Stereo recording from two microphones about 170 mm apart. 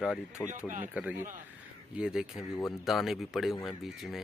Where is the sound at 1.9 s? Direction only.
5° right (ahead or behind).